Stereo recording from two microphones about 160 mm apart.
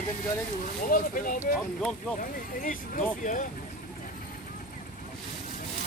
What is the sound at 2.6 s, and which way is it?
Speech, 55° left (ahead or behind).